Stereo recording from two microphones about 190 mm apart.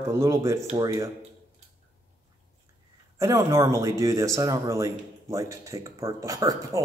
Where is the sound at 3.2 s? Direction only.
15° right (ahead or behind).